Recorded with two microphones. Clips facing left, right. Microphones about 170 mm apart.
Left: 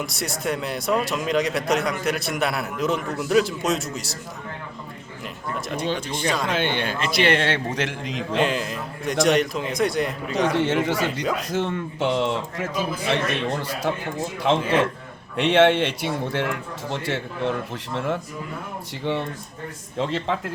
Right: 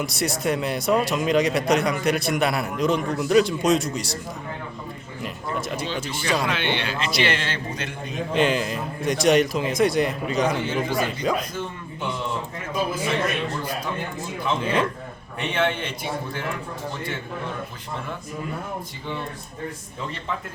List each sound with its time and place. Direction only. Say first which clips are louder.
0.0 s speech: right 3 dB; centre (ahead or behind)
5.2 s a sound: right 2 dB; centre (ahead or behind)
6.5 s a man's voice: left 2 dB; 45° left (ahead or behind); by 8.2 s 90° left
8.4 s speech: right 2 dB; centre (ahead or behind)
10.6 s a man's voice: left 3 dB; 75° left (ahead or behind)
20.0 s speech: left 9 dB; 90° left